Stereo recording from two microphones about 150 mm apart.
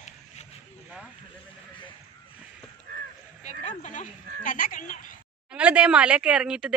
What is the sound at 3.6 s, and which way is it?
A woman's voice, 55° left (ahead or behind).